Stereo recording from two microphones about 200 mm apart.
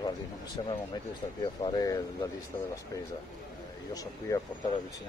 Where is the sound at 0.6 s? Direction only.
20° left (ahead or behind).